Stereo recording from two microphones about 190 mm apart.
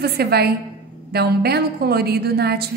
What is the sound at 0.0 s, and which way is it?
A woman's voice, 55° right (ahead or behind).